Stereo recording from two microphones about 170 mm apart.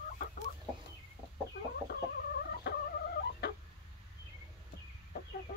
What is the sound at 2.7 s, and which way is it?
Fowl, 75° left (ahead or behind).